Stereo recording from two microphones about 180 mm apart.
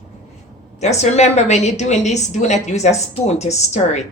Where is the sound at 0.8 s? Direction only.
40° left (ahead or behind).